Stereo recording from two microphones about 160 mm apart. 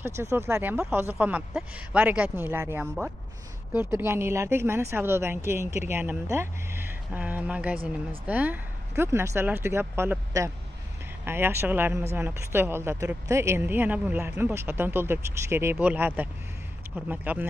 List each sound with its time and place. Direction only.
0.0 s speech: 15° right (ahead or behind)